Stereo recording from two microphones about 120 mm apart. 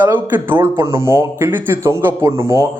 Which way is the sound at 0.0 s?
15° right (ahead or behind).